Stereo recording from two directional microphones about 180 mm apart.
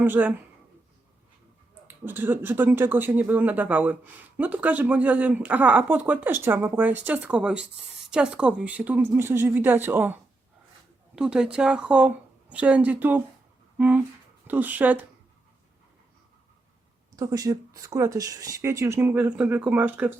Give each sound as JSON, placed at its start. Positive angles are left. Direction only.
{"t": 0.0, "sound": "speech", "side_deg": -10}
{"t": 2.0, "sound": "a woman's voice", "side_deg": -10}
{"t": 17.2, "sound": "speech", "side_deg": -20}